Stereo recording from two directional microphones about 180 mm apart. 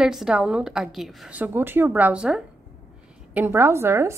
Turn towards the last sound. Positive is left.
turn(degrees=-15)  # may be behind; listen again after turning